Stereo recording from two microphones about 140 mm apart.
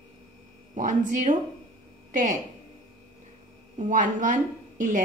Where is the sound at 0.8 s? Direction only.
65° right (ahead or behind).